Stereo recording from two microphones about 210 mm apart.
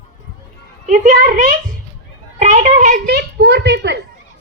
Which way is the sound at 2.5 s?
40° right (ahead or behind).